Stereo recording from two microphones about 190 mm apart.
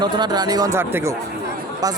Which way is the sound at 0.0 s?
20° right (ahead or behind).